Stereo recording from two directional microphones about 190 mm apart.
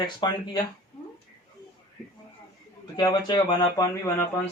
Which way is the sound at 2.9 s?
20° left (ahead or behind).